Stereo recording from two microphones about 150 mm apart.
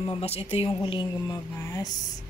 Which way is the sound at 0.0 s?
40° left (ahead or behind).